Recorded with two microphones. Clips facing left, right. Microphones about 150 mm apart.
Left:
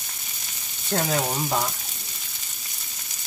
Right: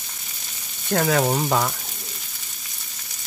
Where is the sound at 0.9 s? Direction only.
70° right (ahead or behind).